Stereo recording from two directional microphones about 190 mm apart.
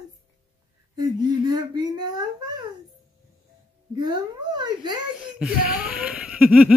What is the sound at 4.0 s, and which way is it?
A woman's voice, 20° right (ahead or behind).